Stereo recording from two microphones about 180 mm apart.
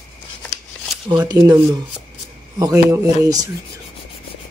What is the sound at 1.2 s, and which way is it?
Speech, 20° right (ahead or behind).